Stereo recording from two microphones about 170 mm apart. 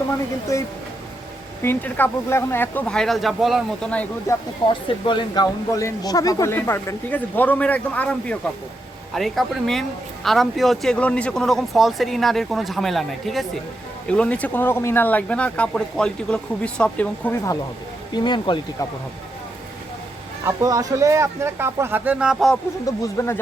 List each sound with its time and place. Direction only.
1.6 s speech: 10° left (ahead or behind)
5.0 s speech: 25° left (ahead or behind); by 17.5 s 10° left (ahead or behind)
18.1 s speech: 25° left (ahead or behind)
20.4 s speech: 15° right (ahead or behind)
22.9 s speech: 20° left (ahead or behind)